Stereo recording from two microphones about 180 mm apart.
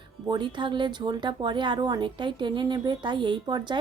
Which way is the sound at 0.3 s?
25° right (ahead or behind).